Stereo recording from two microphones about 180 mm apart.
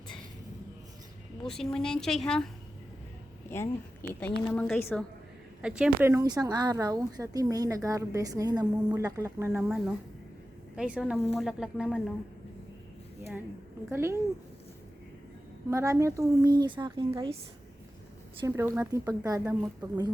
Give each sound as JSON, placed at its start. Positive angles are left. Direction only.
{"t": 1.5, "sound": "a woman's voice", "side_deg": 5}
{"t": 4.1, "sound": "a woman's voice", "side_deg": 10}
{"t": 5.6, "sound": "a woman's voice", "side_deg": -5}
{"t": 9.6, "sound": "a woman's voice", "side_deg": 0}
{"t": 13.9, "sound": "a woman's voice", "side_deg": -15}
{"t": 15.7, "sound": "a woman's voice", "side_deg": -15}
{"t": 18.3, "sound": "a woman's voice", "side_deg": -15}